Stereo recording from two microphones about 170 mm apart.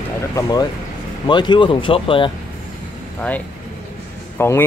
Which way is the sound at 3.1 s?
10° left (ahead or behind).